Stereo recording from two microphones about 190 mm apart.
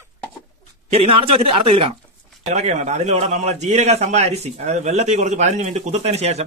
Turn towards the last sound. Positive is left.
turn(degrees=-35)  # may be behind; listen again after turning